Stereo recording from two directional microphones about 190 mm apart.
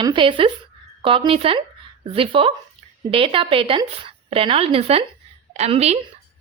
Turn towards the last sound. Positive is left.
turn(degrees=-35)  # may be behind; listen again after turning